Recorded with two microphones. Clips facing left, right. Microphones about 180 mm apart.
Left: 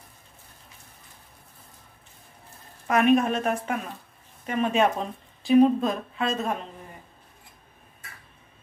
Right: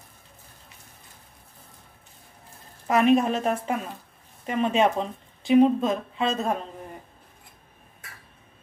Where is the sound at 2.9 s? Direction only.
25° right (ahead or behind).